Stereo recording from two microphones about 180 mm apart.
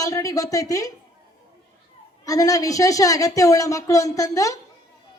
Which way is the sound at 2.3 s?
20° left (ahead or behind).